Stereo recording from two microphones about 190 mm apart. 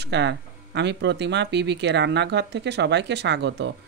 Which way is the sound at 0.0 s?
65° right (ahead or behind).